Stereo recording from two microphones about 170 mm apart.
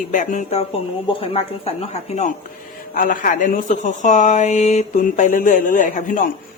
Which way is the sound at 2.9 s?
55° left (ahead or behind).